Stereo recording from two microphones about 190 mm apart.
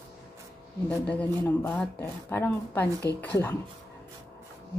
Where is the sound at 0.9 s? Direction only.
5° left (ahead or behind).